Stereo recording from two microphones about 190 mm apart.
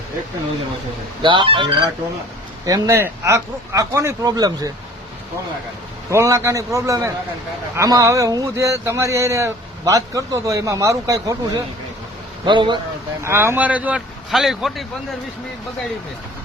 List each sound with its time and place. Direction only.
1.2 s speech: 25° right (ahead or behind)
6.1 s speech: 15° right (ahead or behind)
13.2 s speech: 15° right (ahead or behind)